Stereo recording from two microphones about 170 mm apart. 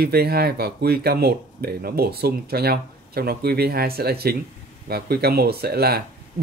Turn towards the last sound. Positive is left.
turn(degrees=-65)  # may be behind; listen again after turning